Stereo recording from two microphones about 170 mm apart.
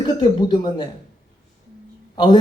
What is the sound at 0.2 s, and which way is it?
Speech, 25° left (ahead or behind).